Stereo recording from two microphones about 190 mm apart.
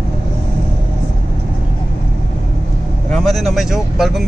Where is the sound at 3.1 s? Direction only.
Centre (ahead or behind).